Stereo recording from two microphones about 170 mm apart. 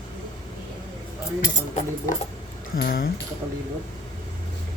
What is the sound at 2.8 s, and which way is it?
Speech, 60° left (ahead or behind).